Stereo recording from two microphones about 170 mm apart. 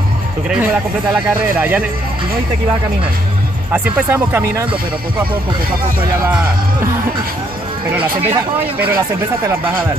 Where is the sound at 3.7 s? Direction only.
10° right (ahead or behind).